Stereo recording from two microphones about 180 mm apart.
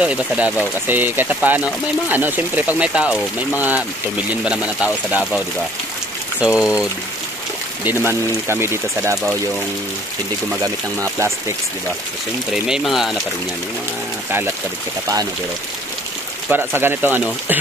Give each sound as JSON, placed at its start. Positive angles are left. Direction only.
{"t": 0.0, "sound": "speech", "side_deg": -5}
{"t": 6.4, "sound": "speech", "side_deg": -5}
{"t": 10.6, "sound": "speech", "side_deg": -15}
{"t": 12.6, "sound": "speech", "side_deg": 0}
{"t": 16.4, "sound": "speech", "side_deg": -10}